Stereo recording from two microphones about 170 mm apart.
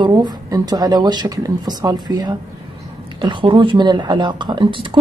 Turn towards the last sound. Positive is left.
turn(degrees=-30)  # may be behind; listen again after turning